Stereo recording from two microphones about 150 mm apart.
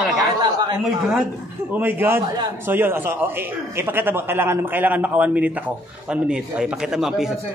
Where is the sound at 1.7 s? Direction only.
15° right (ahead or behind).